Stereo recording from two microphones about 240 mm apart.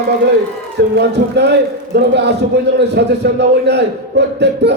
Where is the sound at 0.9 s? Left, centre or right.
Right.